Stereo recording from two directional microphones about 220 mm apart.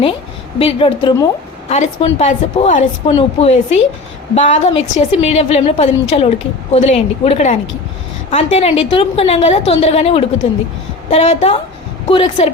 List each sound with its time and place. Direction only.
0.6 s a woman's voice: 25° left (ahead or behind)